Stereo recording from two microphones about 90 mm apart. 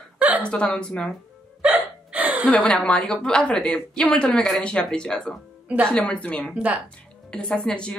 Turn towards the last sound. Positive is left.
turn(degrees=10)  # may be behind; listen again after turning